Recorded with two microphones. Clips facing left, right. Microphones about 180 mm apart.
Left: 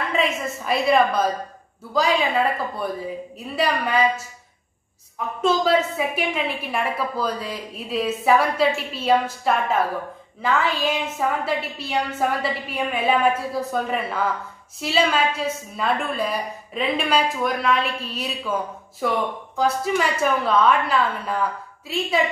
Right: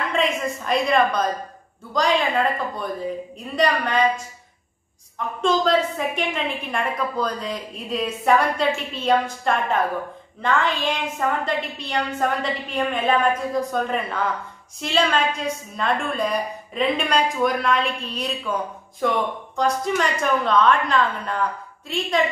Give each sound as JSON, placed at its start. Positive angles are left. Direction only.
{"t": 0.1, "sound": "a woman's voice", "side_deg": 5}
{"t": 5.4, "sound": "a woman's voice", "side_deg": 5}